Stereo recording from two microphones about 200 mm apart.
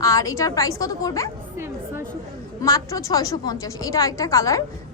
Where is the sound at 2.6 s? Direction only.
15° left (ahead or behind).